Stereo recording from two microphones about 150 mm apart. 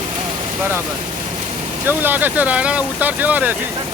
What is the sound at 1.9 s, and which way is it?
Speech, 10° right (ahead or behind).